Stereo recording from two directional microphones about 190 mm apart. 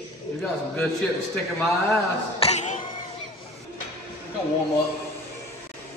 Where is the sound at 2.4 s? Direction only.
35° left (ahead or behind).